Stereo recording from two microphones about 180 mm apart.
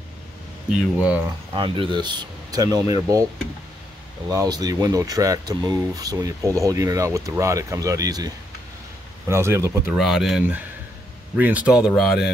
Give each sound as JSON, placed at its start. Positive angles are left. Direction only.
{"t": 0.7, "sound": "speech", "side_deg": -5}
{"t": 1.5, "sound": "speech", "side_deg": -25}
{"t": 4.3, "sound": "speech", "side_deg": -20}
{"t": 9.3, "sound": "speech", "side_deg": -15}
{"t": 9.9, "sound": "speech", "side_deg": 0}